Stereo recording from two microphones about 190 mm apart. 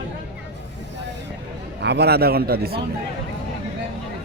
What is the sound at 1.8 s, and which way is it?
Speech, 60° right (ahead or behind).